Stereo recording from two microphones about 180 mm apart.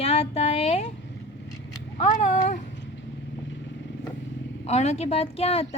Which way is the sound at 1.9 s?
40° left (ahead or behind).